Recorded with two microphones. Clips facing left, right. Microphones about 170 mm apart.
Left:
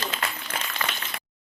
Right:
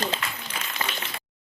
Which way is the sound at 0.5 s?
55° left (ahead or behind).